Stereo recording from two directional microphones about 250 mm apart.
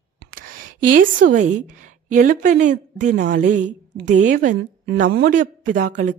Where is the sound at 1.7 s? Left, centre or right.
Right.